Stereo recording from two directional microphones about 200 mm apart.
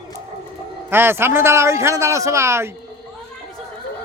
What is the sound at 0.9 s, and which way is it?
A man's voice, 10° right (ahead or behind).